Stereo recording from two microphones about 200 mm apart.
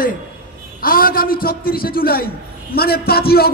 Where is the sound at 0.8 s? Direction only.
45° left (ahead or behind).